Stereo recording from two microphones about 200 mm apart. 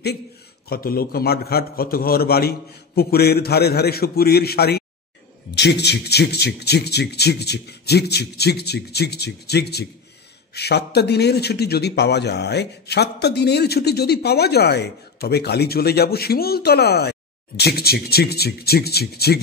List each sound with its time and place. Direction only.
0.7 s a man's voice: 50° left (ahead or behind)